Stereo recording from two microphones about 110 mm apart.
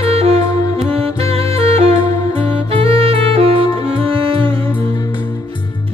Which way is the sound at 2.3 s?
60° right (ahead or behind).